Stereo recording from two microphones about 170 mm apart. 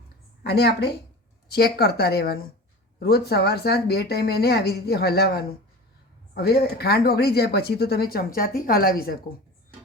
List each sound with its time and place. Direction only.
0.4 s speech: 75° left (ahead or behind)